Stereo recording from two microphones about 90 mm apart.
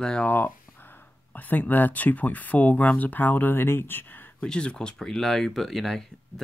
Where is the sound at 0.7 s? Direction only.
20° left (ahead or behind).